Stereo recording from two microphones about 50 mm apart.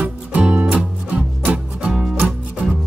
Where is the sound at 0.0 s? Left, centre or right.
Right.